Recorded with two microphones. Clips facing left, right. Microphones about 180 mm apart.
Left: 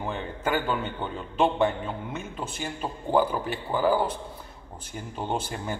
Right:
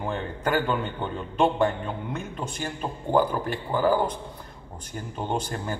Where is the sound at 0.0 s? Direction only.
5° left (ahead or behind).